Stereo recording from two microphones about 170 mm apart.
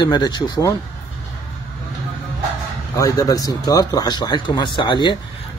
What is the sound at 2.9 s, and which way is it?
A man's voice, 20° left (ahead or behind).